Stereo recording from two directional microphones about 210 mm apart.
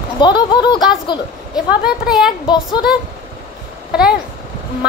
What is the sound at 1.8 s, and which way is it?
Speech, 5° right (ahead or behind).